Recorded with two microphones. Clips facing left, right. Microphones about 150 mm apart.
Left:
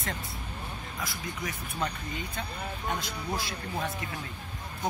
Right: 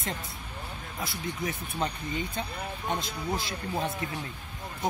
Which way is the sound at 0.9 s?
25° right (ahead or behind).